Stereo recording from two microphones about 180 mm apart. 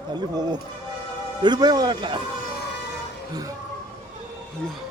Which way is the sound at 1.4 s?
25° right (ahead or behind).